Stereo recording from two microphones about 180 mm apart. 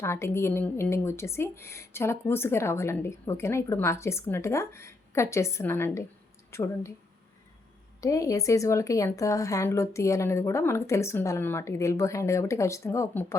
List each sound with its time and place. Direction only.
0.0 s a woman's voice: 15° left (ahead or behind)
8.0 s a woman's voice: 20° left (ahead or behind)